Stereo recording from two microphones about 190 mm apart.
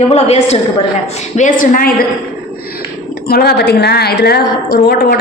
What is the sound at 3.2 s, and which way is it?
A woman's voice, 55° left (ahead or behind).